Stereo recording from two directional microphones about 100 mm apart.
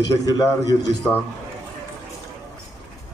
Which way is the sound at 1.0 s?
25° left (ahead or behind).